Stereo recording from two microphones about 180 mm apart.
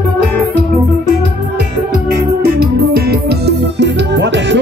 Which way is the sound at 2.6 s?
60° right (ahead or behind).